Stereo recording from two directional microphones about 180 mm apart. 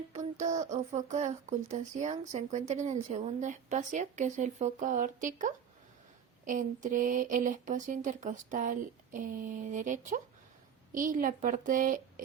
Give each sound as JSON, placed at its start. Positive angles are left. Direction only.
{"t": 0.1, "sound": "speech", "side_deg": -40}